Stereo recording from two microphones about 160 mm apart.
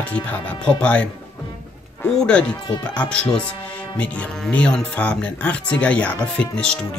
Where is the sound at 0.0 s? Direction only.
10° left (ahead or behind).